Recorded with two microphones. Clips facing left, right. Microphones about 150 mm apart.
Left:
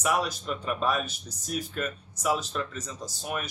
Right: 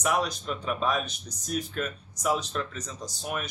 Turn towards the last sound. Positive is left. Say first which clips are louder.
# even
turn(degrees=0)  # may be behind; listen again after turning